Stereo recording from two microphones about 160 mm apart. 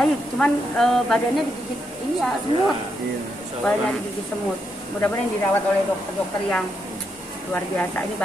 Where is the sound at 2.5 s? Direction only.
35° right (ahead or behind).